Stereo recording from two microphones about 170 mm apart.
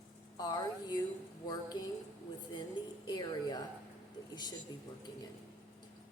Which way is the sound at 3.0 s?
25° left (ahead or behind).